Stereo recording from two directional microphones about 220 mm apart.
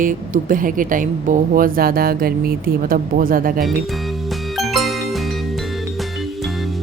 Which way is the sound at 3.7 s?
Centre (ahead or behind).